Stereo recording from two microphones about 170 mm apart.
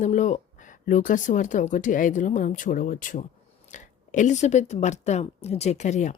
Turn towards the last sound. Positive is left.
turn(degrees=45)  # may be behind; listen again after turning